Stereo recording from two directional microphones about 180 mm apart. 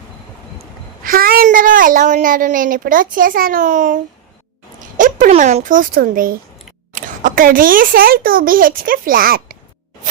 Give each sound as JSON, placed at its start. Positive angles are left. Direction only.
{"t": 1.0, "sound": "a child's voice", "side_deg": -55}
{"t": 4.9, "sound": "a sound", "side_deg": -45}
{"t": 5.3, "sound": "a child's voice", "side_deg": -40}